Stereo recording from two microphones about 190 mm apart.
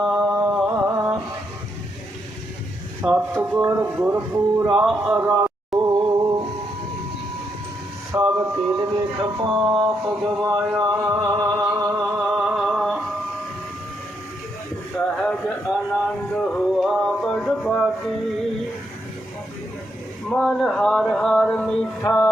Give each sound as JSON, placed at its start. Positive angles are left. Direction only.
{"t": 0.0, "sound": "music", "side_deg": -5}
{"t": 3.0, "sound": "speech", "side_deg": -10}
{"t": 8.1, "sound": "speech", "side_deg": -15}
{"t": 8.7, "sound": "speech", "side_deg": -20}
{"t": 10.8, "sound": "music", "side_deg": -10}
{"t": 15.1, "sound": "a sound", "side_deg": 5}
{"t": 16.3, "sound": "music", "side_deg": 5}
{"t": 20.3, "sound": "a sound", "side_deg": 0}